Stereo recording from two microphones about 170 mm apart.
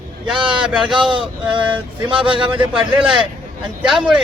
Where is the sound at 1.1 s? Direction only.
30° right (ahead or behind).